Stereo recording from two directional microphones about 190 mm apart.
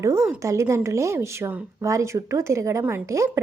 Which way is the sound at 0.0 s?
15° right (ahead or behind).